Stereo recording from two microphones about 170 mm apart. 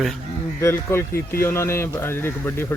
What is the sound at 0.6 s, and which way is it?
Speech, 15° left (ahead or behind).